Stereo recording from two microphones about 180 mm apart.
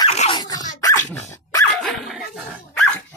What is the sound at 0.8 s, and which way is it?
Dog, 15° left (ahead or behind).